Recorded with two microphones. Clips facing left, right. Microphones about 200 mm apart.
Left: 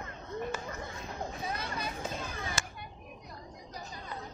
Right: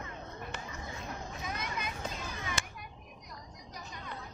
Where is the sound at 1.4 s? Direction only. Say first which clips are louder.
Even; 35° left (ahead or behind).